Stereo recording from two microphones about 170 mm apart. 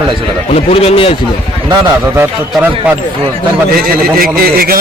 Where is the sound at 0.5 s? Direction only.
35° left (ahead or behind).